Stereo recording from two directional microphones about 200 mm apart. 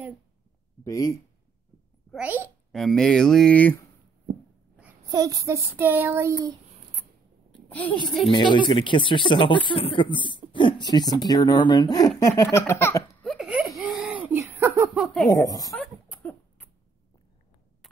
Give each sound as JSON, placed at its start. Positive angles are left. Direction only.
{"t": 0.8, "sound": "speech", "side_deg": 20}
{"t": 2.0, "sound": "a child's voice", "side_deg": -5}
{"t": 2.7, "sound": "speech", "side_deg": 0}
{"t": 5.1, "sound": "child singing", "side_deg": -15}
{"t": 7.5, "sound": "a child's voice", "side_deg": 5}
{"t": 8.3, "sound": "speech", "side_deg": 25}
{"t": 12.2, "sound": "laughter", "side_deg": 15}
{"t": 13.2, "sound": "a sound", "side_deg": 0}
{"t": 15.2, "sound": "speech", "side_deg": 20}
{"t": 15.7, "sound": "cough", "side_deg": 0}